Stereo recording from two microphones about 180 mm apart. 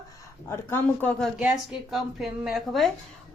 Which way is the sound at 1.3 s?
5° right (ahead or behind).